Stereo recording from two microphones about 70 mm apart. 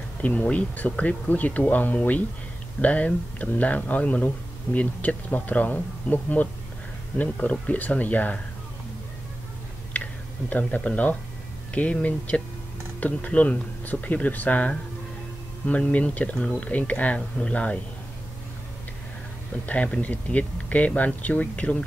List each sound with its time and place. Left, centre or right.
0.2 s speech: left
10.5 s speech: left
19.6 s speech: left